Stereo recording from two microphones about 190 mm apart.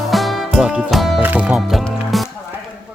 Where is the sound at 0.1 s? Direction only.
Centre (ahead or behind).